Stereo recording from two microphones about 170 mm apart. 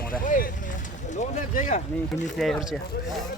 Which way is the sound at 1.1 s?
45° left (ahead or behind).